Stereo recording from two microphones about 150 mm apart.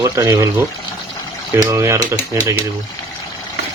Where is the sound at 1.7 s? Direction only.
20° right (ahead or behind).